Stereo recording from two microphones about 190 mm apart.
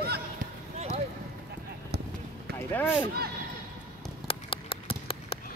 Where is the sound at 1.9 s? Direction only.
60° right (ahead or behind).